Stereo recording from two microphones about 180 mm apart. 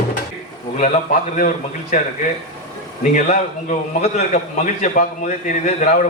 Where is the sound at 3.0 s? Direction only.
45° left (ahead or behind).